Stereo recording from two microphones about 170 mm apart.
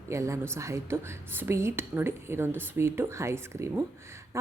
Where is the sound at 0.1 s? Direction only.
15° right (ahead or behind).